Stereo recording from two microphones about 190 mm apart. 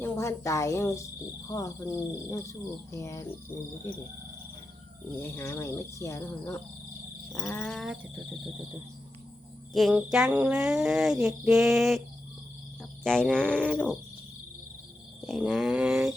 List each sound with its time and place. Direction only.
0.0 s a woman's voice: 15° left (ahead or behind)
5.2 s speech: 15° left (ahead or behind)
9.7 s speech: centre (ahead or behind)
13.1 s speech: 5° left (ahead or behind)
15.3 s speech: centre (ahead or behind)